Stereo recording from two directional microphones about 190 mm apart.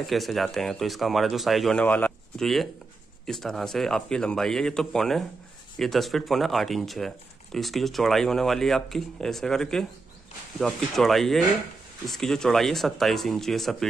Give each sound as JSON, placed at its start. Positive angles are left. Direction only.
{"t": 0.0, "sound": "speech", "side_deg": 0}